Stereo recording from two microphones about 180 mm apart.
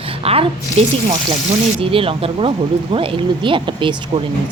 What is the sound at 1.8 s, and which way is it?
Speech, 30° right (ahead or behind).